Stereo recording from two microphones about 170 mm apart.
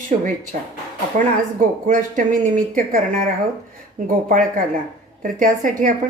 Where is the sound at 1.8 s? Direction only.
50° right (ahead or behind).